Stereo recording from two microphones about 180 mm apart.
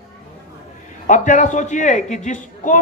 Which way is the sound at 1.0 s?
45° left (ahead or behind).